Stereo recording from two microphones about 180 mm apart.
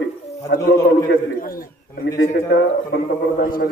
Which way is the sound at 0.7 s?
55° left (ahead or behind).